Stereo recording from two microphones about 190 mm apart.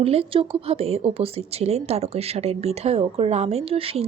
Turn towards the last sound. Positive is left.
turn(degrees=-30)  # may be behind; listen again after turning